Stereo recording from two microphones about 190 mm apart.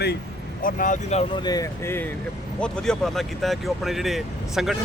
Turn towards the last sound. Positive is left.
turn(degrees=0)  # may be behind; listen again after turning